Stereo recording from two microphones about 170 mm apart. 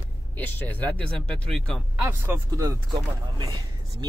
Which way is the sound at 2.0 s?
15° right (ahead or behind).